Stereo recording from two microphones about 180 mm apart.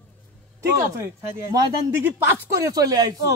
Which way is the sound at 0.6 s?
15° right (ahead or behind).